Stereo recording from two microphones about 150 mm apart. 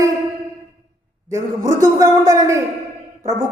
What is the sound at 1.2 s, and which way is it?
A man's voice, 20° right (ahead or behind).